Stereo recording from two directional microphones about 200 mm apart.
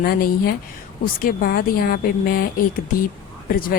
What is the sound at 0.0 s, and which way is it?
Speech, 45° left (ahead or behind).